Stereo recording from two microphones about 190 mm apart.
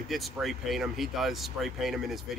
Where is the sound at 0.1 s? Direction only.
Centre (ahead or behind).